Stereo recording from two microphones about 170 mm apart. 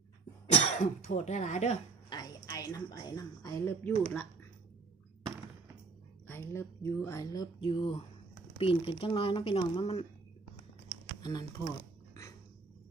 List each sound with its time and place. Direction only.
0.5 s speech: 40° left (ahead or behind)
2.0 s a woman's voice: 20° left (ahead or behind); by 4.3 s 5° left (ahead or behind)
6.2 s speech: 15° left (ahead or behind); by 10.0 s 35° left (ahead or behind)
11.2 s speech: 25° left (ahead or behind)
12.1 s a sound: 20° left (ahead or behind)